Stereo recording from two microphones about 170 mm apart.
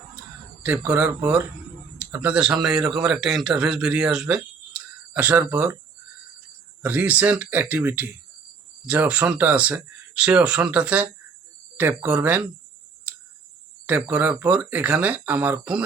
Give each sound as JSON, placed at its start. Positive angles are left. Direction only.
{"t": 0.6, "sound": "a man's voice", "side_deg": -10}
{"t": 6.8, "sound": "speech", "side_deg": -10}
{"t": 13.8, "sound": "speech", "side_deg": -10}